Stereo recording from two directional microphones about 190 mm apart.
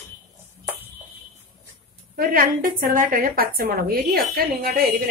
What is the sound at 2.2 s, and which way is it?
A woman's voice, 50° right (ahead or behind).